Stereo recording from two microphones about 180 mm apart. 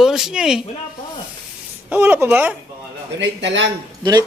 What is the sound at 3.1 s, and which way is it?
Speech, 85° right.